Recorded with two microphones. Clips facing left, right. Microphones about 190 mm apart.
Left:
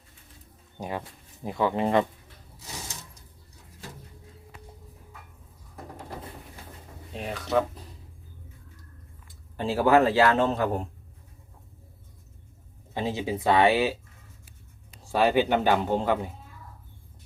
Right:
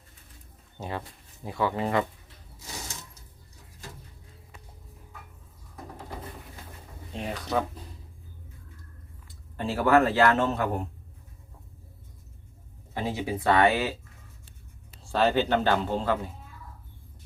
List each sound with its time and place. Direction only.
0.8 s speech: 15° left (ahead or behind)
7.1 s speech: centre (ahead or behind)
9.6 s speech: 15° left (ahead or behind)
12.9 s speech: 20° left (ahead or behind)
15.1 s speech: 10° left (ahead or behind)